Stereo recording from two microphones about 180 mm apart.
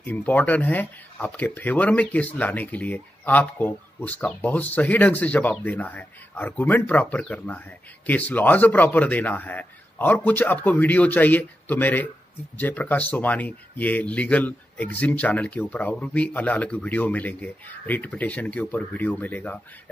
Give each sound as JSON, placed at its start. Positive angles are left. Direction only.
{"t": 0.0, "sound": "speech", "side_deg": 10}